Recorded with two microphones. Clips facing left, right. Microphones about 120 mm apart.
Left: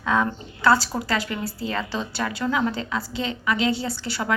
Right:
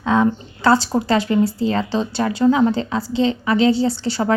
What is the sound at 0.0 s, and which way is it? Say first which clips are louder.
Speech: right 6 dB; 25° right (ahead or behind).